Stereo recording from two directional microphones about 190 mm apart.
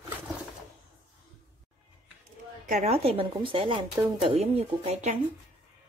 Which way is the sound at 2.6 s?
35° right (ahead or behind).